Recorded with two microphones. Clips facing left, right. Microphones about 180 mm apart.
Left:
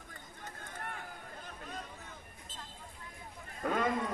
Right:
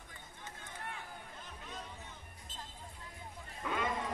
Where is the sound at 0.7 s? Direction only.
50° left (ahead or behind).